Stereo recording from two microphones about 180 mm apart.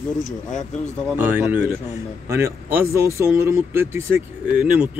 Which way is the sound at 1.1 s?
10° right (ahead or behind).